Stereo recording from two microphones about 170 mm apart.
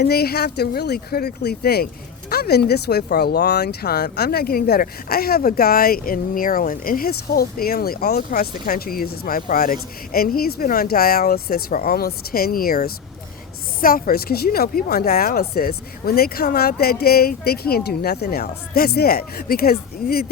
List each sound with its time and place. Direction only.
0.0 s speech: 70° left (ahead or behind)